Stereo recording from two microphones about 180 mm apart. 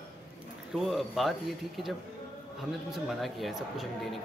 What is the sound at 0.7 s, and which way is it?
Speech, centre (ahead or behind).